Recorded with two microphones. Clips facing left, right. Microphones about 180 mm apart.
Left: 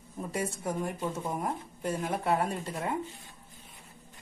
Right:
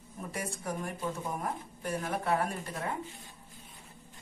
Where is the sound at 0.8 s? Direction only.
25° left (ahead or behind).